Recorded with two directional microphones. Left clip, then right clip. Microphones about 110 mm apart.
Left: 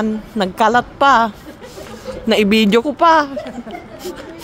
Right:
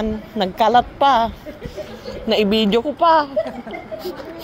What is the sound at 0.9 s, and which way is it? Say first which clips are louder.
Speech: left 3 dB; 45° left (ahead or behind).